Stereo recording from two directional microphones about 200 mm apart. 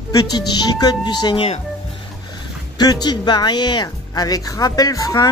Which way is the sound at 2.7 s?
20° left (ahead or behind).